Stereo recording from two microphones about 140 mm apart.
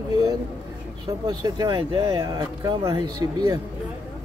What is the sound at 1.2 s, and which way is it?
Speech, 25° right (ahead or behind).